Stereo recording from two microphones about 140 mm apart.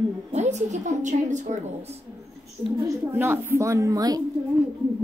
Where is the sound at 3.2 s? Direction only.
15° right (ahead or behind).